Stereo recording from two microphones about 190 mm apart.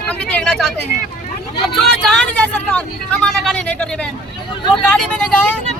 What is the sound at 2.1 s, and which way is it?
Speech, 5° left (ahead or behind).